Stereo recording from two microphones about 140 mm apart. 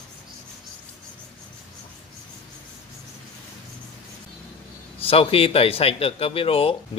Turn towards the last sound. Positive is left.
turn(degrees=40)  # may be behind; listen again after turning